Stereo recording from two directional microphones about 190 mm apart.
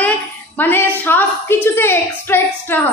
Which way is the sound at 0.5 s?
10° left (ahead or behind).